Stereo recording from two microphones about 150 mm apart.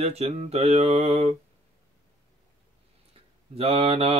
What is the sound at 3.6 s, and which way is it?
Mantra, 40° right (ahead or behind).